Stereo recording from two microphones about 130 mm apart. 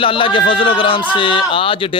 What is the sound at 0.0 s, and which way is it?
A man's voice, 40° left (ahead or behind).